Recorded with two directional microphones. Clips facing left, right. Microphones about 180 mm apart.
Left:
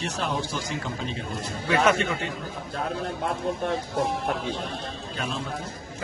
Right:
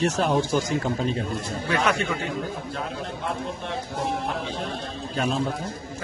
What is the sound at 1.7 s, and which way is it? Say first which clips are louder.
Speech: left 2 dB; centre (ahead or behind).